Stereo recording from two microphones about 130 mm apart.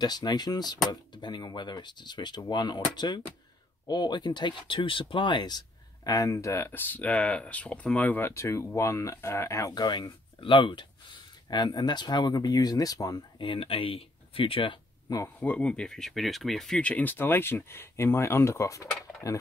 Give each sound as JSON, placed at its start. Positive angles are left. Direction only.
{"t": 0.0, "sound": "speech", "side_deg": 30}
{"t": 15.2, "sound": "speech", "side_deg": 10}